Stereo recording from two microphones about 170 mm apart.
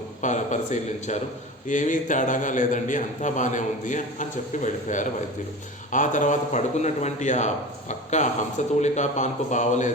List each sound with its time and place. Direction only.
0.2 s a man's voice: 45° left (ahead or behind)